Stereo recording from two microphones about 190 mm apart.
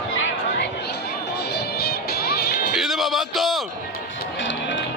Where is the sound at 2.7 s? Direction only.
Centre (ahead or behind).